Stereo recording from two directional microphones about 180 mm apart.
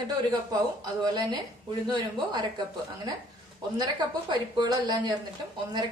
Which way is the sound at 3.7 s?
20° right (ahead or behind).